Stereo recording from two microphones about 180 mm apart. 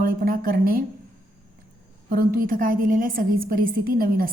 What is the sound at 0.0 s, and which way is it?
Speech, 55° right (ahead or behind).